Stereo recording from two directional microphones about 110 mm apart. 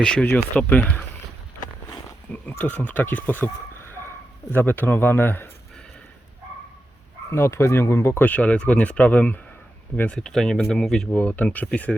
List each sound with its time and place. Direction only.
0.0 s speech: 5° left (ahead or behind)
2.3 s a man's voice: 15° left (ahead or behind)
7.3 s speech: 25° left (ahead or behind)